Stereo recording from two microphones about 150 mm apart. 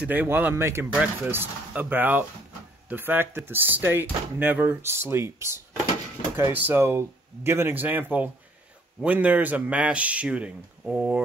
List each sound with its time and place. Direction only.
0.0 s speech: 10° right (ahead or behind)